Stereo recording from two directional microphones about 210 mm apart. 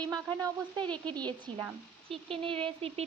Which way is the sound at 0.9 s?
5° left (ahead or behind).